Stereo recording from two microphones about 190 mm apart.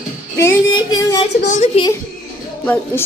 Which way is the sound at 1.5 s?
40° left (ahead or behind).